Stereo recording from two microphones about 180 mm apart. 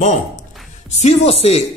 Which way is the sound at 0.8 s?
40° left (ahead or behind).